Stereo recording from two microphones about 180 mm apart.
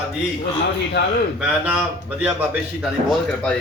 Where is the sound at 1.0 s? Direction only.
75° left (ahead or behind).